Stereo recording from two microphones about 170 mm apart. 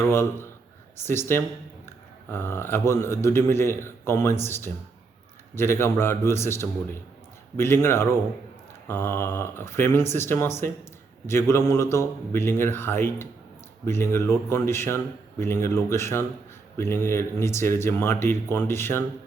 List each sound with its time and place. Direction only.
0.1 s speech: 15° left (ahead or behind)